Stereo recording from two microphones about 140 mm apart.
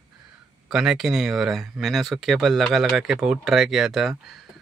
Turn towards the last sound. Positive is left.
turn(degrees=0)  # may be behind; listen again after turning